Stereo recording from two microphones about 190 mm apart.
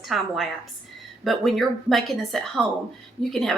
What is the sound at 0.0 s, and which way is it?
A woman's voice, centre (ahead or behind).